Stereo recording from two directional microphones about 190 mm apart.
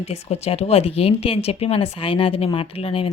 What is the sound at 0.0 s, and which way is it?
A woman's voice, 35° left (ahead or behind).